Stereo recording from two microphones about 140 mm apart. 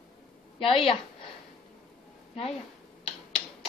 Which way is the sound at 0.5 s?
40° left (ahead or behind).